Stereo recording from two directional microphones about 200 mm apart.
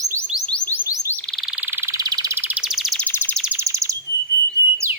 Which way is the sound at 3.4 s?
10° right (ahead or behind).